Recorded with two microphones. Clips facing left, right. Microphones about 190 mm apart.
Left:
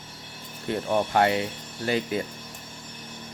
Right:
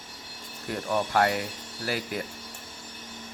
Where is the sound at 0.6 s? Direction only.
25° left (ahead or behind).